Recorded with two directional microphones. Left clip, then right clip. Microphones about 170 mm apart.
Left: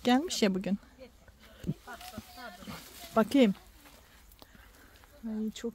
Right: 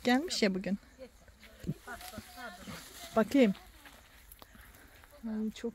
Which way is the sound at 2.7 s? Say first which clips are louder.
Left 2 dB; 10° left (ahead or behind).